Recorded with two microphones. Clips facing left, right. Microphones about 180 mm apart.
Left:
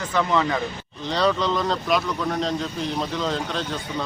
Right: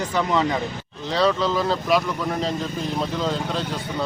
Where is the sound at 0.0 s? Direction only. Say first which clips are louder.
Even; 10° right (ahead or behind).